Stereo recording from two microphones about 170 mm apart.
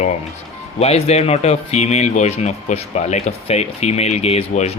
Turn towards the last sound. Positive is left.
turn(degrees=40)  # may be behind; listen again after turning